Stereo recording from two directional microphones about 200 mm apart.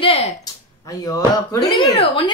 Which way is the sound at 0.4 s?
20° left (ahead or behind).